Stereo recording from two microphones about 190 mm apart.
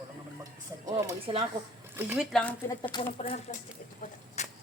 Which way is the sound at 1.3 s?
30° right (ahead or behind).